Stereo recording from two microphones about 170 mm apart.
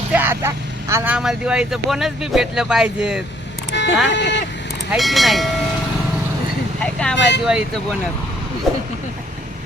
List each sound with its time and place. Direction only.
0.1 s speech: 10° right (ahead or behind)
1.1 s speech: 5° right (ahead or behind)
3.7 s music: 90° left
4.1 s speech: 90° left
4.9 s speech: centre (ahead or behind)
6.7 s vehicle: 5° left (ahead or behind)
7.2 s speech: 90° left